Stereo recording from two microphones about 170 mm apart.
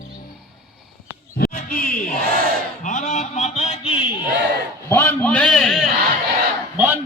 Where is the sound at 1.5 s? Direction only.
55° left (ahead or behind); by 4.0 s 35° left (ahead or behind).